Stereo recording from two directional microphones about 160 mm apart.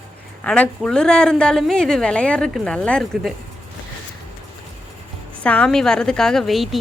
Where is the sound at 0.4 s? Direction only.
5° left (ahead or behind).